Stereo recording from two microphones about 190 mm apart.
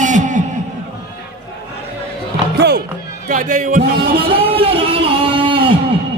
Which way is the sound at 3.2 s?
45° right (ahead or behind).